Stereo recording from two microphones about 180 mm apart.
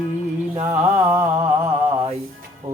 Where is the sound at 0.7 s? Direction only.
15° right (ahead or behind).